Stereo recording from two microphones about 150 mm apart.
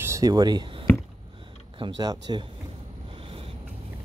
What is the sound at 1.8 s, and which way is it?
Speech, 25° right (ahead or behind).